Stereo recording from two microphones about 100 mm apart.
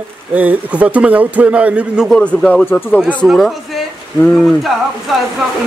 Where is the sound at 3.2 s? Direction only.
Centre (ahead or behind).